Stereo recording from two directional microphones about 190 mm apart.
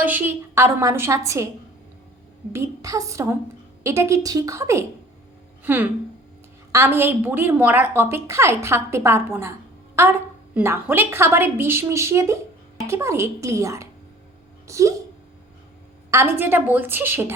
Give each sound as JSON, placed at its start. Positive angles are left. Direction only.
{"t": 0.0, "sound": "a woman's voice", "side_deg": -10}
{"t": 2.5, "sound": "a woman's voice", "side_deg": -15}
{"t": 16.1, "sound": "a woman's voice", "side_deg": -10}